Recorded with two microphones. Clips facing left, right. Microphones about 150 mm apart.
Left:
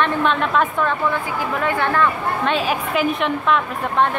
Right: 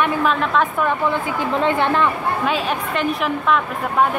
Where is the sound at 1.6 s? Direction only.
20° right (ahead or behind).